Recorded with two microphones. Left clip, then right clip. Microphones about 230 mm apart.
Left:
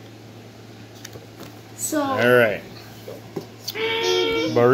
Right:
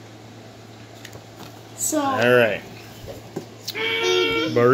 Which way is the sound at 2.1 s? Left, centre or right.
Centre.